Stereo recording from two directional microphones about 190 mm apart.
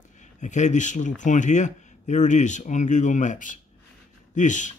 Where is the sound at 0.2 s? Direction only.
40° left (ahead or behind).